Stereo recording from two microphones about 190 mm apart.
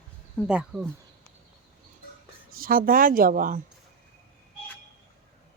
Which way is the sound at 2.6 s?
50° right (ahead or behind).